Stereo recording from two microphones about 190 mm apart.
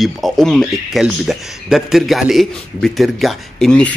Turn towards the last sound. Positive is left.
turn(degrees=5)  # may be behind; listen again after turning